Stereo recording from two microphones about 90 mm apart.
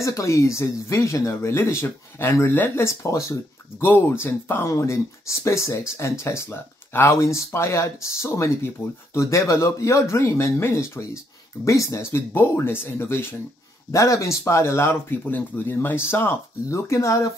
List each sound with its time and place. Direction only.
0.0 s speech: 35° left (ahead or behind)
3.0 s speech: 35° left (ahead or behind)
4.2 s speech: 25° left (ahead or behind)